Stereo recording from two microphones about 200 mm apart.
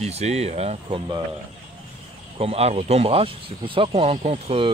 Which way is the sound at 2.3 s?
30° right (ahead or behind).